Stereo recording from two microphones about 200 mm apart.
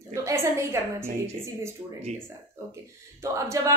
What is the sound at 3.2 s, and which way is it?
Speech, 15° right (ahead or behind).